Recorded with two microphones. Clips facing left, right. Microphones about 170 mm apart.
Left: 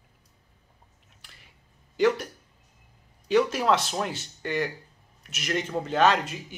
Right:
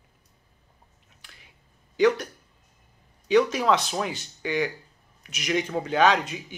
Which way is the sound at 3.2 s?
5° left (ahead or behind).